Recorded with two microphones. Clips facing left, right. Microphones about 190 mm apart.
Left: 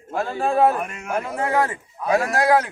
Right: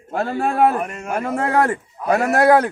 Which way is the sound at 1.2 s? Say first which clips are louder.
Right 5 dB; 60° right (ahead or behind).